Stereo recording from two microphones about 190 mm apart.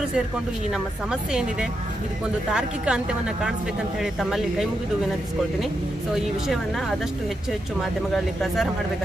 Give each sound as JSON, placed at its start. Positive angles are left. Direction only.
{"t": 2.5, "sound": "a woman's voice", "side_deg": -5}
{"t": 6.1, "sound": "a woman's voice", "side_deg": 0}
{"t": 8.1, "sound": "a woman's voice", "side_deg": 0}